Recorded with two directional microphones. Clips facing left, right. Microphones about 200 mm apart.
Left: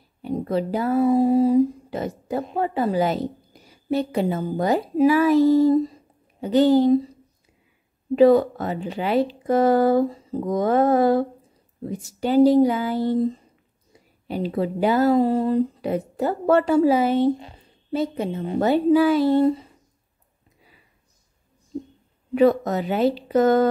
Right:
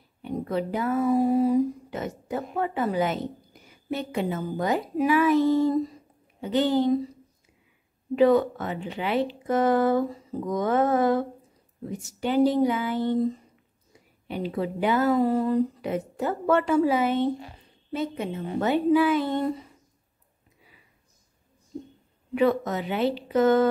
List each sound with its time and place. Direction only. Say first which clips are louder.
0.2 s a woman's voice: left 4 dB; 35° left (ahead or behind)
8.2 s a woman's voice: left 4 dB; 35° left (ahead or behind)
22.3 s a woman's voice: left 5 dB; 40° left (ahead or behind)